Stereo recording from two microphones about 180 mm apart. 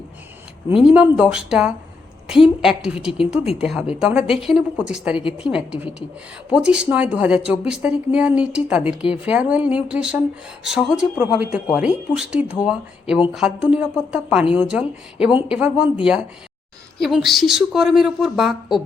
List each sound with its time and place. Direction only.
0.8 s speech: 5° right (ahead or behind)
17.0 s speech: centre (ahead or behind)